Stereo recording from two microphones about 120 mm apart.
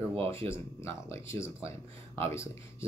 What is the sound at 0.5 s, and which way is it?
Speech, 25° left (ahead or behind).